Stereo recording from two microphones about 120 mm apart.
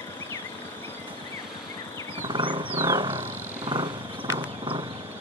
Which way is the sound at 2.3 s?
45° right (ahead or behind).